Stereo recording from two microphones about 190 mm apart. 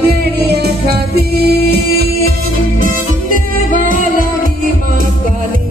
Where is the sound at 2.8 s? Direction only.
45° right (ahead or behind).